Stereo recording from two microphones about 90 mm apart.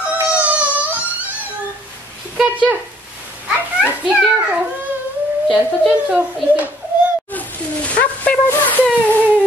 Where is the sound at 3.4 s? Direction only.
10° right (ahead or behind).